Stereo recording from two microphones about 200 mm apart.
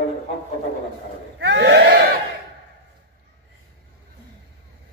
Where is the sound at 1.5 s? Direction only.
60° right (ahead or behind).